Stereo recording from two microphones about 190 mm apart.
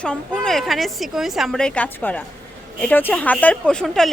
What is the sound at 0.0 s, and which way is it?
Speech, 5° left (ahead or behind).